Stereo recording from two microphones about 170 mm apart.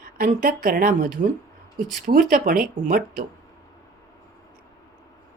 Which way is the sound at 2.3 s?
55° right (ahead or behind).